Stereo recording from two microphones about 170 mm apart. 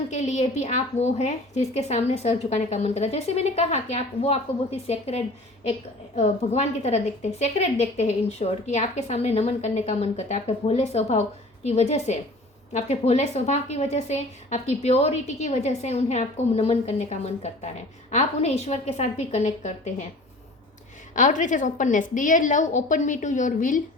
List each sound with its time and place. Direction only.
0.1 s a woman's voice: 45° left (ahead or behind)
21.2 s a woman's voice: 50° left (ahead or behind)